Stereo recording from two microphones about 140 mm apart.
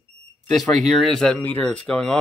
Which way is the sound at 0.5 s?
Centre (ahead or behind).